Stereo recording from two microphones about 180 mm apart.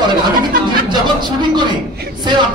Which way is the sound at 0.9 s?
25° right (ahead or behind).